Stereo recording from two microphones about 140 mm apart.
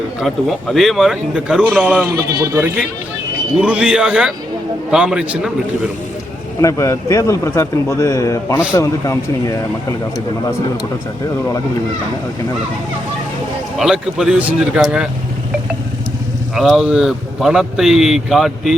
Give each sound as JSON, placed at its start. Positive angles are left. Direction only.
{"t": 0.2, "sound": "speech", "side_deg": 0}
{"t": 2.1, "sound": "speech", "side_deg": -20}
{"t": 3.6, "sound": "a man's voice", "side_deg": -5}
{"t": 6.6, "sound": "speech", "side_deg": 20}
{"t": 13.7, "sound": "speech", "side_deg": -5}
{"t": 16.6, "sound": "speech", "side_deg": 0}